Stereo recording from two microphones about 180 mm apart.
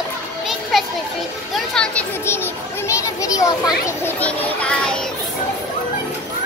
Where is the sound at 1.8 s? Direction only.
10° left (ahead or behind).